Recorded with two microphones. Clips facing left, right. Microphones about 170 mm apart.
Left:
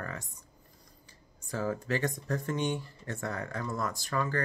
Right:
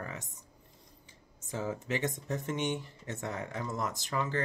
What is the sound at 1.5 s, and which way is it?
Speech, 20° right (ahead or behind).